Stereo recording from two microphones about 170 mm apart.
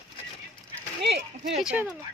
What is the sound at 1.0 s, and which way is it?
Speech, 85° right.